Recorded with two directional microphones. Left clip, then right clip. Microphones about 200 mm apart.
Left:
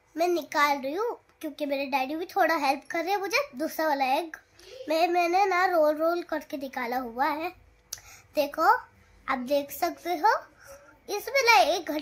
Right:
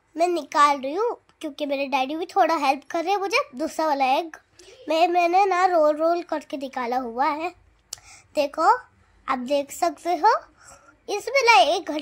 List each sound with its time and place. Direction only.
0.1 s a child's voice: 25° right (ahead or behind)